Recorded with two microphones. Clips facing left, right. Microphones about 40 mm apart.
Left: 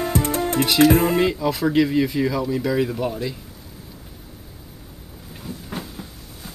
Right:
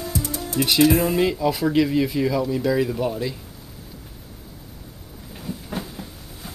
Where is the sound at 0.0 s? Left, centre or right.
Left.